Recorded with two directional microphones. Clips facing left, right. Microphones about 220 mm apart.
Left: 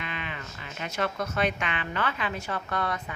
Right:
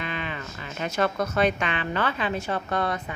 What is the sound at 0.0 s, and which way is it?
A woman's voice, 35° right (ahead or behind).